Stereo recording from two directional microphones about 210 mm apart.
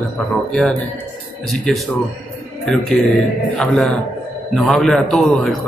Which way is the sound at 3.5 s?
Centre (ahead or behind).